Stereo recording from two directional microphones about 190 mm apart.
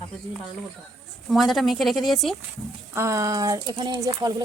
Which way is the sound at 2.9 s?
15° right (ahead or behind).